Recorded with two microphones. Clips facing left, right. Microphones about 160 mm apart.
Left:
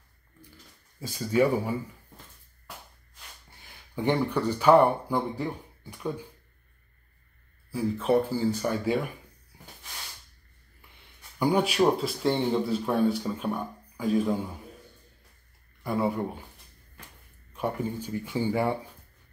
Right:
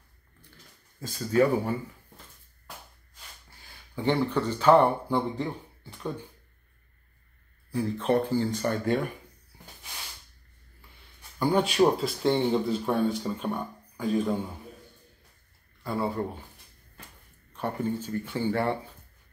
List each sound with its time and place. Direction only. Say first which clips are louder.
1.0 s speech: right 1 dB; 10° left (ahead or behind)
3.4 s speech: left 1 dB; 20° left (ahead or behind)
7.7 s speech: left 1 dB; 5° left (ahead or behind)
11.3 s speech: even; 10° left (ahead or behind)
15.8 s speech: left 2 dB; 15° left (ahead or behind)
17.6 s speech: even; 10° left (ahead or behind)